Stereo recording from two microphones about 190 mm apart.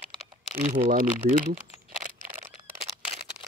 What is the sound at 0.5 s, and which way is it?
Speech, 45° right (ahead or behind).